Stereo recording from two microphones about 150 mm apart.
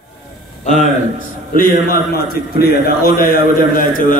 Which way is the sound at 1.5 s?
75° left (ahead or behind).